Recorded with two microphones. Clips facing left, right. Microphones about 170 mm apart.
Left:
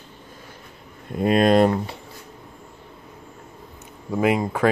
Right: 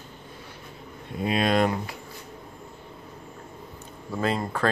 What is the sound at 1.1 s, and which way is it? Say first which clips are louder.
Speech: left 7 dB; 50° left (ahead or behind).